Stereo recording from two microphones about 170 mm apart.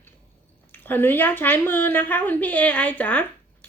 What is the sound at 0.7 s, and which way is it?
A woman's voice, 10° left (ahead or behind).